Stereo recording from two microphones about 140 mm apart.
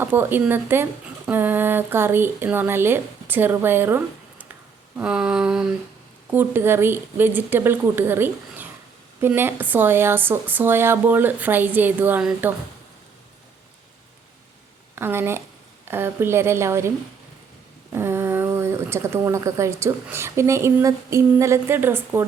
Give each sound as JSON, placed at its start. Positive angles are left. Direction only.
{"t": 0.0, "sound": "speech", "side_deg": -15}
{"t": 14.9, "sound": "speech", "side_deg": -15}
{"t": 17.9, "sound": "speech", "side_deg": -15}